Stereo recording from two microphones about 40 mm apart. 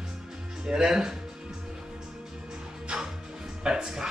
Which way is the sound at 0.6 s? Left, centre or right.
Centre.